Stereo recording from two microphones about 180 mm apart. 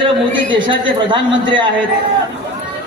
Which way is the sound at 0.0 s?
25° right (ahead or behind).